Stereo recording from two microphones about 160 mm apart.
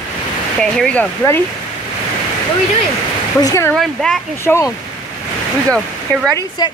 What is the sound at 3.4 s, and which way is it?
Speech, 20° left (ahead or behind).